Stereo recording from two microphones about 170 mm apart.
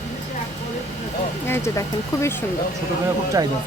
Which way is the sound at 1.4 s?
15° left (ahead or behind).